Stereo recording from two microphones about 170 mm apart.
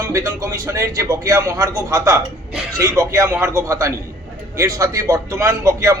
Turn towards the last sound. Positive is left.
turn(degrees=-20)  # may be behind; listen again after turning